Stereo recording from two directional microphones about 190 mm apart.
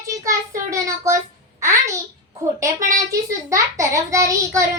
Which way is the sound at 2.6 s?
15° right (ahead or behind).